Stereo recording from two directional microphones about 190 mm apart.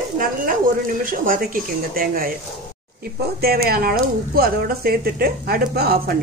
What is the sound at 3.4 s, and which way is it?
A woman's voice, 55° right (ahead or behind).